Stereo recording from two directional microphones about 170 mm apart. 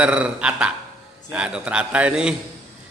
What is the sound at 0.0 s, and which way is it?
A man's voice, 5° right (ahead or behind).